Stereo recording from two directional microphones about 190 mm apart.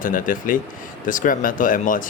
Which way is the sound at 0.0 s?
45° left (ahead or behind).